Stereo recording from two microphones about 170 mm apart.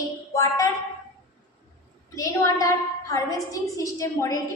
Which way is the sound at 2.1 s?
20° left (ahead or behind).